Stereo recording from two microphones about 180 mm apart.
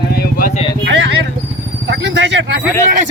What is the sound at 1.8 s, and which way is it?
Speech, 80° right.